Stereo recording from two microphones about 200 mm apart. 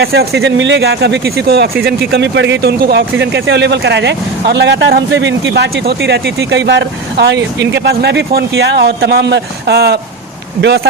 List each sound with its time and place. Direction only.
0.0 s speech: 55° right (ahead or behind)